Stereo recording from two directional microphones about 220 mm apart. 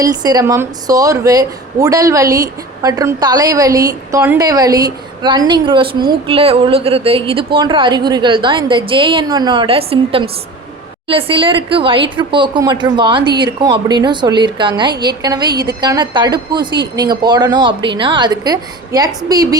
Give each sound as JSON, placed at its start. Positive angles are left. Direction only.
{"t": 0.0, "sound": "a woman's voice", "side_deg": -15}